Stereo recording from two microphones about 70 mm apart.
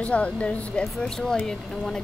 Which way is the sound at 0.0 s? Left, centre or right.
Centre.